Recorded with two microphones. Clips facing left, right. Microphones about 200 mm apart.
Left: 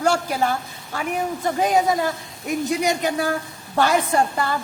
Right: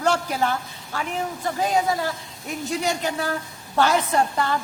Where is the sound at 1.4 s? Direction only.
20° left (ahead or behind).